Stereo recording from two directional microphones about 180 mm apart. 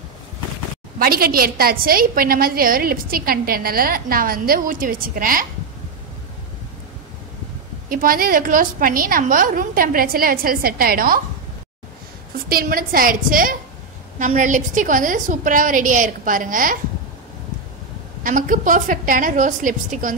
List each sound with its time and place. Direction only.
0.9 s a woman's voice: 55° right (ahead or behind)
7.9 s a woman's voice: 50° right (ahead or behind)
12.4 s a woman's voice: 55° right (ahead or behind)
18.2 s a woman's voice: 45° right (ahead or behind)